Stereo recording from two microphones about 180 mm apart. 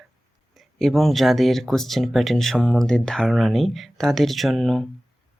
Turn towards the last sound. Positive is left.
turn(degrees=0)  # may be behind; listen again after turning